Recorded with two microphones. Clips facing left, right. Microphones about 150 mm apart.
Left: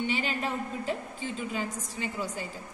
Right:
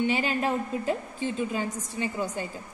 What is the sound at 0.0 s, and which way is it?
Speech, 45° right (ahead or behind).